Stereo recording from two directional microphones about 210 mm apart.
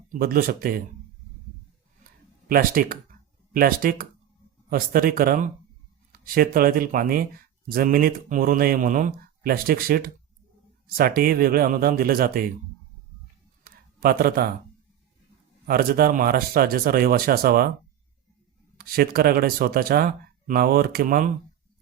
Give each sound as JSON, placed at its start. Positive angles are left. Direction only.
{"t": 0.1, "sound": "speech", "side_deg": -45}
{"t": 2.5, "sound": "speech", "side_deg": -45}
{"t": 13.7, "sound": "a sound", "side_deg": -45}
{"t": 15.6, "sound": "speech", "side_deg": -45}
{"t": 18.8, "sound": "speech", "side_deg": -45}